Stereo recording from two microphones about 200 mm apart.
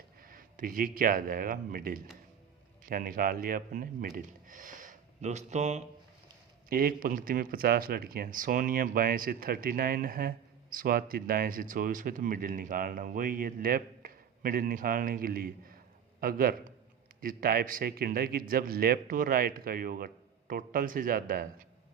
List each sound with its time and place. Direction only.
0.2 s speech: 45° right (ahead or behind)
6.7 s speech: 45° right (ahead or behind)